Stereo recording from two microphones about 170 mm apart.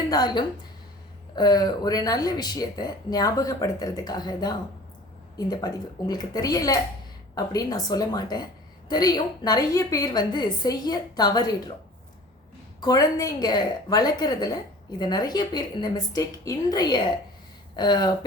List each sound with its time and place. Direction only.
0.1 s a woman's voice: 25° left (ahead or behind)
12.8 s a woman's voice: 20° left (ahead or behind)